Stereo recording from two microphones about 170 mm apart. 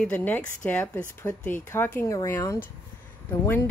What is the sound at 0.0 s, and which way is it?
A woman's voice, 10° left (ahead or behind).